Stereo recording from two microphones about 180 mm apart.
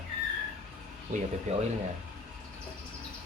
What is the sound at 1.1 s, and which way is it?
Speech, 45° right (ahead or behind).